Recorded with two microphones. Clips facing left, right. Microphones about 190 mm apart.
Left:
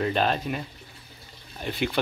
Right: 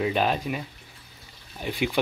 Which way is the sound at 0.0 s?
10° right (ahead or behind).